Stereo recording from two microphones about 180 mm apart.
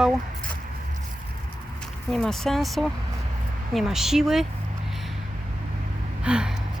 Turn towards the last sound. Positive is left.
turn(degrees=-5)  # may be behind; listen again after turning